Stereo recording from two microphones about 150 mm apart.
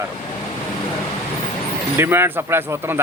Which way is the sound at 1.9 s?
15° right (ahead or behind).